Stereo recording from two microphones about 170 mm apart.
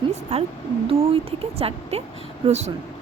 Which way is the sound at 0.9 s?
35° right (ahead or behind).